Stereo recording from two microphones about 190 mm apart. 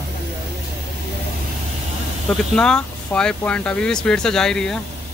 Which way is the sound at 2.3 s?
5° left (ahead or behind).